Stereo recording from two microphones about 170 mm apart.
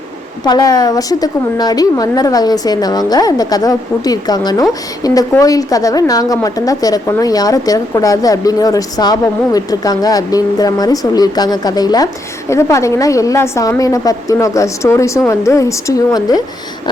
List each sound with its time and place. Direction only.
0.4 s a woman's voice: 25° left (ahead or behind)